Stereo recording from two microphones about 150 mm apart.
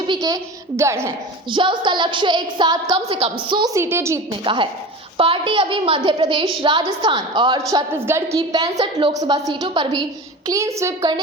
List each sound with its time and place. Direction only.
0.1 s a child's voice: 25° right (ahead or behind)
1.5 s a woman's voice: 35° right (ahead or behind)
3.5 s a woman's voice: 25° right (ahead or behind)
4.4 s a woman's voice: 35° right (ahead or behind)
7.7 s a woman's voice: 20° right (ahead or behind)
8.8 s a woman's voice: 35° right (ahead or behind)